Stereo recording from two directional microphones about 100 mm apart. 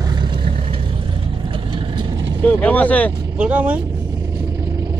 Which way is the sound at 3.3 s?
15° right (ahead or behind).